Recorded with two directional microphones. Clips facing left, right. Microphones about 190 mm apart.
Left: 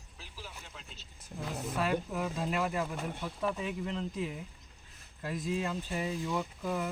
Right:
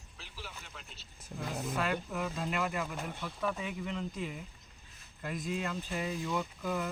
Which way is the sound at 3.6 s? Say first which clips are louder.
Left 2 dB; 30° left (ahead or behind).